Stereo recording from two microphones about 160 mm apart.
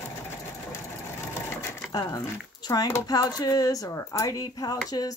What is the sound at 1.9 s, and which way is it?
Speech, 25° left (ahead or behind).